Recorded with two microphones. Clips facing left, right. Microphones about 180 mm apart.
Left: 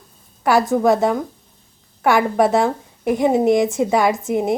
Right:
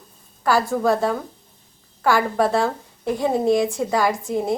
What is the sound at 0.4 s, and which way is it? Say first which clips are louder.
A woman's voice: left 4 dB; 20° left (ahead or behind).